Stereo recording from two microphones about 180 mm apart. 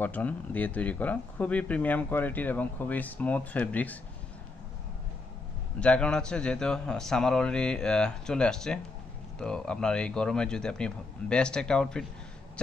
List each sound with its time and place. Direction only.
0.0 s speech: 10° left (ahead or behind)
5.8 s a man's voice: 5° left (ahead or behind)